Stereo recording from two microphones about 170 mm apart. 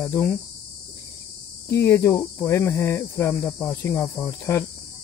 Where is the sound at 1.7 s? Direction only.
15° left (ahead or behind).